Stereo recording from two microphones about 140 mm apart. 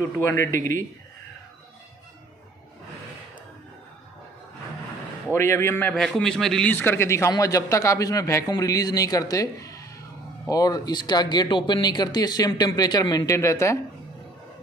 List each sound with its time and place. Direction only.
0.0 s speech: 15° left (ahead or behind)
5.3 s a man's voice: 20° left (ahead or behind)
5.9 s a man's voice: 5° left (ahead or behind)
6.7 s speech: 15° left (ahead or behind)